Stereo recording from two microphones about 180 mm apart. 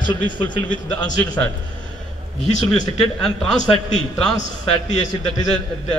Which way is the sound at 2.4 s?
40° left (ahead or behind).